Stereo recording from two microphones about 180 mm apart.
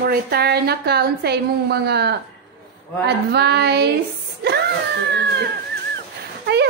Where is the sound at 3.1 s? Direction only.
65° right (ahead or behind).